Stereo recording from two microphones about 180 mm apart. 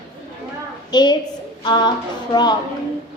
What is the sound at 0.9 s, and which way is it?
A woman's voice, 25° left (ahead or behind).